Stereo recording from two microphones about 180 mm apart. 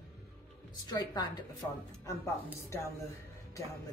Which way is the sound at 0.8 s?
25° left (ahead or behind).